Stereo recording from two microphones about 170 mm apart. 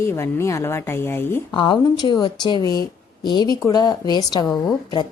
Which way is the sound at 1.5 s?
25° left (ahead or behind).